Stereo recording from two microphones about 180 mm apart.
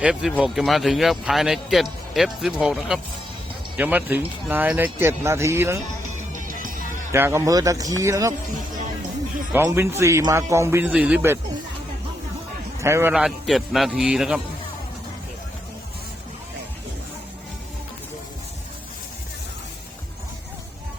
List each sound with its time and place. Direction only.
0.0 s speech: 5° right (ahead or behind)
6.1 s music: 45° right (ahead or behind)
7.1 s speech: 15° right (ahead or behind)
9.6 s speech: 15° right (ahead or behind)
12.8 s speech: 15° right (ahead or behind)
13.1 s speech: centre (ahead or behind)